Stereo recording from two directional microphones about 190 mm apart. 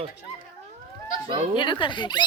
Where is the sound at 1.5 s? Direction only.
25° left (ahead or behind).